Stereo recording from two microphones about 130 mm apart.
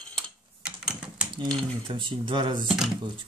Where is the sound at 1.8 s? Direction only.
40° right (ahead or behind).